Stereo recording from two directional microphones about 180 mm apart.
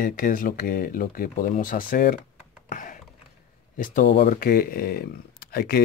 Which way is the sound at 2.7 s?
45° left (ahead or behind).